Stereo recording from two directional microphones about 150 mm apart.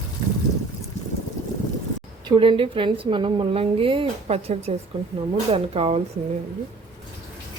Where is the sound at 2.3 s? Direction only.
35° right (ahead or behind).